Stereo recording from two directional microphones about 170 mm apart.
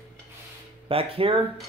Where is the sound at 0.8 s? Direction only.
35° right (ahead or behind).